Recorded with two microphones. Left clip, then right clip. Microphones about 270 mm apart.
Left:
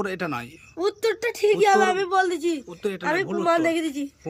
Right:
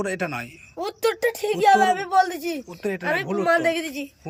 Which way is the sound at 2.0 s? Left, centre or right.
Centre.